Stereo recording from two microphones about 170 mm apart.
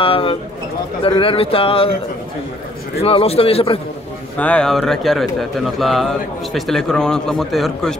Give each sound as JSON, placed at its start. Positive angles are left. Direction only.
{"t": 0.0, "sound": "speech", "side_deg": 30}
{"t": 3.0, "sound": "speech", "side_deg": 35}
{"t": 4.4, "sound": "speech", "side_deg": 5}